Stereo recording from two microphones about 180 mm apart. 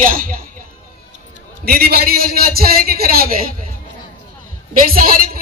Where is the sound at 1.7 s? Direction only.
55° right (ahead or behind).